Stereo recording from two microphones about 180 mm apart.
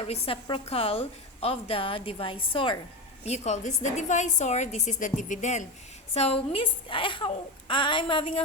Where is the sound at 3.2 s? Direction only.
40° left (ahead or behind).